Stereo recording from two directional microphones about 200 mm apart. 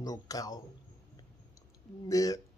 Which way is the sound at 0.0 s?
15° left (ahead or behind).